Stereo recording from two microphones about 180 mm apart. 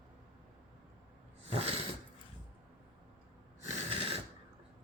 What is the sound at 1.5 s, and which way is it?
Dog, 35° right (ahead or behind).